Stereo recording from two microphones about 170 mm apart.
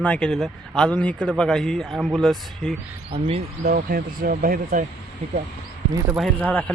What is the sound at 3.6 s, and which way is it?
Speech, 60° right (ahead or behind).